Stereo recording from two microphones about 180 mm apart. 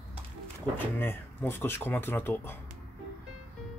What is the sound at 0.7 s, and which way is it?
Speech, 10° left (ahead or behind).